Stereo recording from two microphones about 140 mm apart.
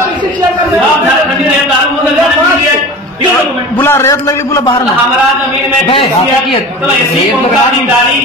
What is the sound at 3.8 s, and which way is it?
Speech, 20° left (ahead or behind).